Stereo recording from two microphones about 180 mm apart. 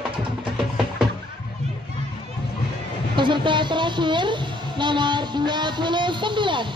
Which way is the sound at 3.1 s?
25° right (ahead or behind).